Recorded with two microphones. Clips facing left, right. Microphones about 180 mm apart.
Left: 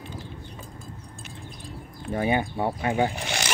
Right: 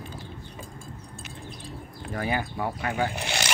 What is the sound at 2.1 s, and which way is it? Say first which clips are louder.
Speech: left 4 dB; 25° left (ahead or behind).